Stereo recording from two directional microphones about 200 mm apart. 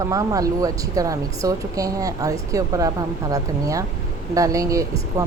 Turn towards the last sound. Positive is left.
turn(degrees=-15)  # may be behind; listen again after turning